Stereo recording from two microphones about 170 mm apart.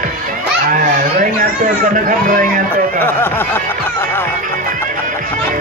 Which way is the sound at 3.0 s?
10° left (ahead or behind).